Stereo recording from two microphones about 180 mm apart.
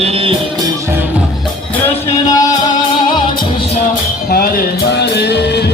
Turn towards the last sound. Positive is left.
turn(degrees=65)  # may be behind; listen again after turning